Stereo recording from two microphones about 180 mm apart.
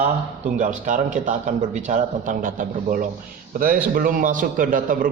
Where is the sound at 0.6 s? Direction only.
45° right (ahead or behind).